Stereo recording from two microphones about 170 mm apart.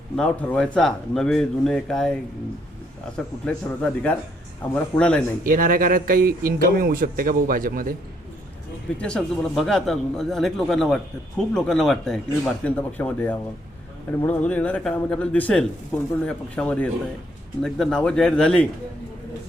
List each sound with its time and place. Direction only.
0.2 s speech: 5° left (ahead or behind)
3.4 s speech: 5° left (ahead or behind)
5.4 s speech: 55° right (ahead or behind)
9.0 s speech: 5° left (ahead or behind)